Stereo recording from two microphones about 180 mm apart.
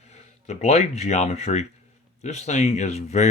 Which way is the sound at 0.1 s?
40° left (ahead or behind).